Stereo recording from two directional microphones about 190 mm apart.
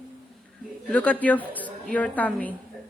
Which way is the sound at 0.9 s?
5° left (ahead or behind).